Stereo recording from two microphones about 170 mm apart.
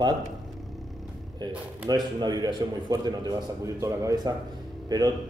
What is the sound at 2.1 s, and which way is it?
A man's voice, 25° right (ahead or behind).